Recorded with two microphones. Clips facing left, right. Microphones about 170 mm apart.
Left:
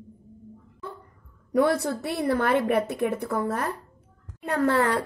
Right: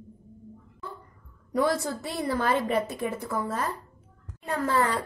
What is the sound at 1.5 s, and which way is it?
A woman's voice, 60° left (ahead or behind).